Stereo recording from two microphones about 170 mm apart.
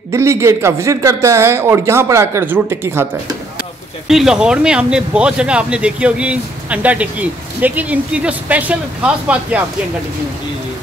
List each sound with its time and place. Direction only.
0.1 s speech: 15° right (ahead or behind)
4.1 s speech: 5° right (ahead or behind)